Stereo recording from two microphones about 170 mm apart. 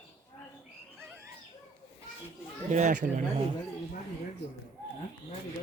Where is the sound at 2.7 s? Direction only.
45° right (ahead or behind).